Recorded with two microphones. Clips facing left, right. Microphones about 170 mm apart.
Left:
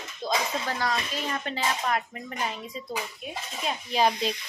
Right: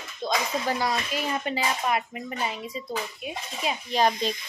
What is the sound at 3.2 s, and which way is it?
A woman's voice, 5° right (ahead or behind).